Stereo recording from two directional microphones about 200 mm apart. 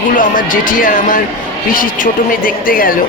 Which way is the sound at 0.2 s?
40° left (ahead or behind).